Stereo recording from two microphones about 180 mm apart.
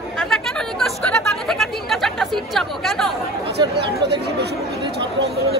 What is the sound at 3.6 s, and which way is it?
Chatter, 25° right (ahead or behind).